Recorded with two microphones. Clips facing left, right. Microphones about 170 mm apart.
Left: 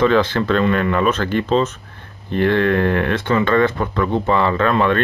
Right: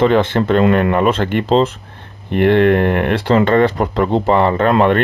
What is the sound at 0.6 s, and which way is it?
Speech, 60° right (ahead or behind).